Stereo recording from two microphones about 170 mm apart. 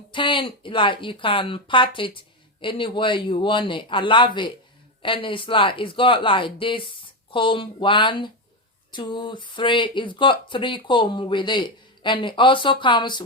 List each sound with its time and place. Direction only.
0.1 s speech: 30° left (ahead or behind)